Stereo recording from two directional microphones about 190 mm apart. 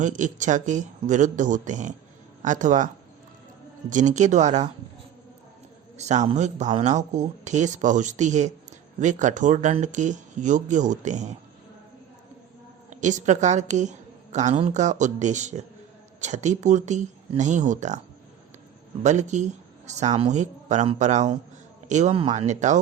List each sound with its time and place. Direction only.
0.0 s speech: 40° right (ahead or behind)
6.0 s speech: 35° right (ahead or behind)
12.9 s speech: 40° right (ahead or behind)
19.0 s speech: 40° right (ahead or behind)